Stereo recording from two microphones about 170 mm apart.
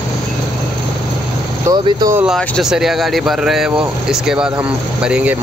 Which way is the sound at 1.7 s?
25° right (ahead or behind).